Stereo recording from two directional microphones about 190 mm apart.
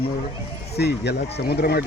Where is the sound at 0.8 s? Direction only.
60° left (ahead or behind).